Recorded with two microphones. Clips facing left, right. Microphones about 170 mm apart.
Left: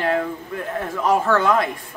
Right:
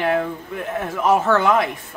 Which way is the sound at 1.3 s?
20° right (ahead or behind).